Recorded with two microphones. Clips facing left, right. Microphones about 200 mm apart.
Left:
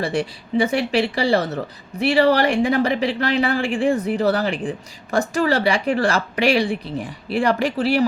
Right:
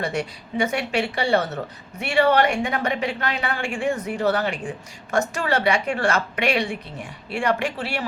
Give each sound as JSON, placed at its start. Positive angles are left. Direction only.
{"t": 0.0, "sound": "speech", "side_deg": 30}